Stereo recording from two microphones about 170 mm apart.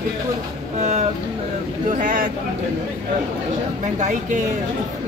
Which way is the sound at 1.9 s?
50° right (ahead or behind).